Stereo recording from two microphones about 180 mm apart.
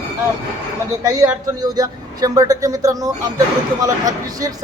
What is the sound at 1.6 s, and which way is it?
Speech, 20° right (ahead or behind).